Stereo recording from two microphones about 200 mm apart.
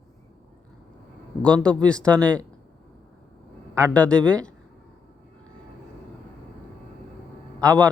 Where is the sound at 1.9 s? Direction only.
5° left (ahead or behind).